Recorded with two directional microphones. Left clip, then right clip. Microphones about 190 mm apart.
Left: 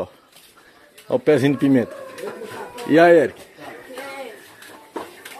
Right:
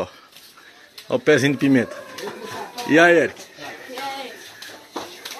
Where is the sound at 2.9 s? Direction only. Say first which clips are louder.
Left 1 dB; 20° left (ahead or behind).